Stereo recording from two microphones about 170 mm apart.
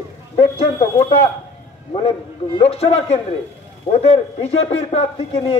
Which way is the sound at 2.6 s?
35° left (ahead or behind).